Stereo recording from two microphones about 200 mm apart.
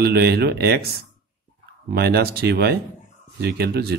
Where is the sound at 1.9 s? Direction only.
50° right (ahead or behind).